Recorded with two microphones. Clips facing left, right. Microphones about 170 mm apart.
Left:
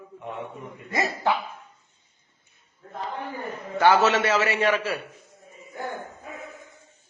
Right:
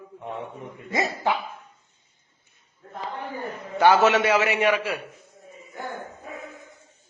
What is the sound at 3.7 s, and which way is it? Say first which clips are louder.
A man's voice: right 1 dB; 20° right (ahead or behind).